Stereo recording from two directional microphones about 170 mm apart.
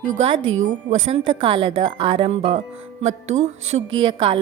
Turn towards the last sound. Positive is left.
turn(degrees=-30)  # may be behind; listen again after turning